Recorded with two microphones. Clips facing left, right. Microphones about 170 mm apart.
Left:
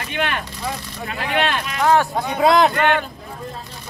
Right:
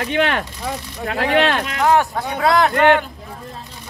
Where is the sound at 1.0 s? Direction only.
75° right (ahead or behind).